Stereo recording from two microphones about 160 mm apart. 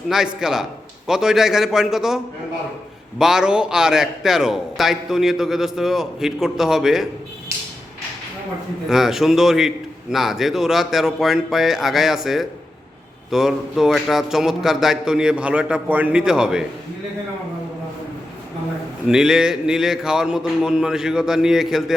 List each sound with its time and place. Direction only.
0.1 s a man's voice: 5° right (ahead or behind)
8.9 s a man's voice: 5° right (ahead or behind)
19.0 s a man's voice: 5° right (ahead or behind)